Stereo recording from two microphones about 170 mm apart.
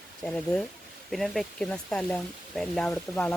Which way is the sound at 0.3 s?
5° left (ahead or behind).